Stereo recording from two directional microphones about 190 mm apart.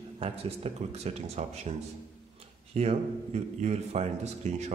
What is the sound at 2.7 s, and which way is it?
Speech, 35° right (ahead or behind).